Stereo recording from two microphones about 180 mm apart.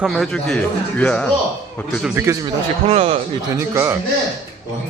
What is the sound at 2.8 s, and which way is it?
Speech, 35° right (ahead or behind).